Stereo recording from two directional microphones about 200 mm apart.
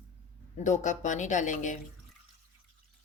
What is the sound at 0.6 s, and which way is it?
Speech, 40° left (ahead or behind).